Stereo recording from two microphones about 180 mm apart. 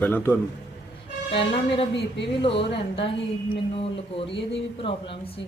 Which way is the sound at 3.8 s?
30° left (ahead or behind).